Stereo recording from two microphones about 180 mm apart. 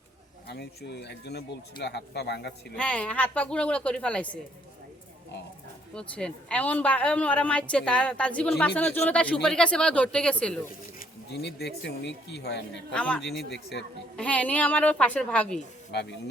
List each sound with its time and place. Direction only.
0.4 s speech: 65° left (ahead or behind)
2.7 s a woman's voice: 5° left (ahead or behind)
5.9 s a woman's voice: 5° left (ahead or behind)
11.3 s speech: 65° left (ahead or behind)
12.9 s speech: 5° left (ahead or behind)
13.4 s speech: 65° left (ahead or behind)
14.2 s a woman's voice: 5° left (ahead or behind)
15.9 s speech: 70° left (ahead or behind)